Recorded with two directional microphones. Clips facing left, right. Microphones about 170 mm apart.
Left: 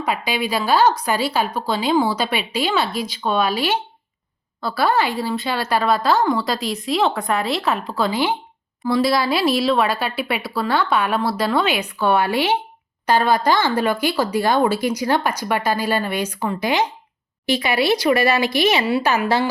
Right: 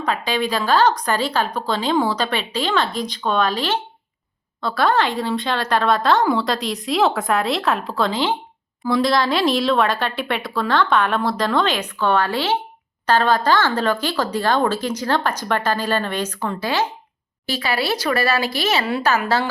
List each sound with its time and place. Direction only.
0.0 s speech: 10° left (ahead or behind)